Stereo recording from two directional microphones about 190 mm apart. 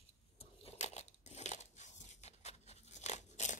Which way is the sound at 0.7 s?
35° left (ahead or behind).